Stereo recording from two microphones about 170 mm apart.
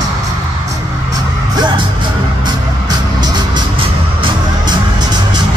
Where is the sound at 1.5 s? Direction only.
25° right (ahead or behind).